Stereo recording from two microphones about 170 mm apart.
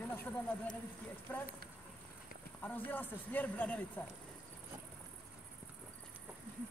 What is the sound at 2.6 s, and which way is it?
Speech, 10° left (ahead or behind).